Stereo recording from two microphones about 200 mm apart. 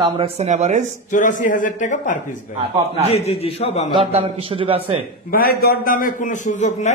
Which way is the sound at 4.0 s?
30° right (ahead or behind).